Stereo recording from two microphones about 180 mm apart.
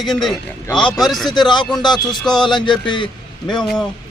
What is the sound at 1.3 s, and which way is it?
A man's voice, 25° left (ahead or behind).